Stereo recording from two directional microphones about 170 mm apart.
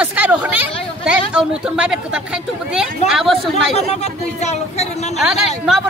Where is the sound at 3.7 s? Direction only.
40° left (ahead or behind).